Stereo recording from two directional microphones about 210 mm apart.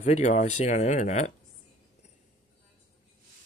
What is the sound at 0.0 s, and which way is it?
Speech, 35° left (ahead or behind).